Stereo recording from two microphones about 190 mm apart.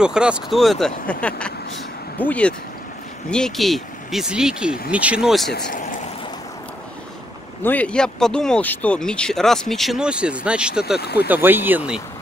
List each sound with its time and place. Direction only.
0.0 s speech: 5° right (ahead or behind)
5.5 s speech: 60° left (ahead or behind)
7.6 s speech: 10° left (ahead or behind)
11.0 s speech: 60° left (ahead or behind)
11.2 s speech: 10° right (ahead or behind)